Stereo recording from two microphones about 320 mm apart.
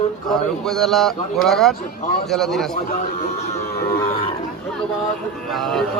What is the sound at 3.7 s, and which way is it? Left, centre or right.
Cattle, left.